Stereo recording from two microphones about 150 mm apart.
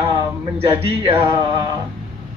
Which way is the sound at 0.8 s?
35° right (ahead or behind).